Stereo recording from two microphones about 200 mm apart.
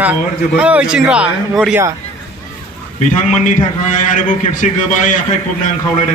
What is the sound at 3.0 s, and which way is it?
A man's voice, 40° left (ahead or behind).